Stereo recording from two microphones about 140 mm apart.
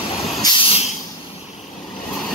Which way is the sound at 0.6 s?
50° left (ahead or behind).